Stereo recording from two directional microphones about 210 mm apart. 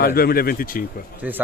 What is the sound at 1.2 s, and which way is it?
Speech, 10° right (ahead or behind).